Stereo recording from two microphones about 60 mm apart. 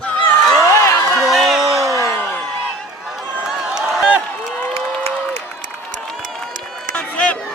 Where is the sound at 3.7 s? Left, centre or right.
Centre.